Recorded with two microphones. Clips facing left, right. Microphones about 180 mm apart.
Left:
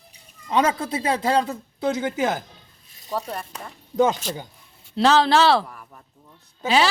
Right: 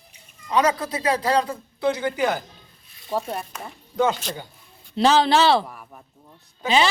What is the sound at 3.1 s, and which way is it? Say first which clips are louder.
Speech: right 2 dB; 10° right (ahead or behind).